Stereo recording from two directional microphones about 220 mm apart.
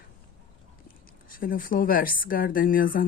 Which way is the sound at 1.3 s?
40° left (ahead or behind).